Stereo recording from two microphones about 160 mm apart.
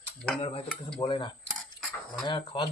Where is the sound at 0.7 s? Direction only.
5° left (ahead or behind).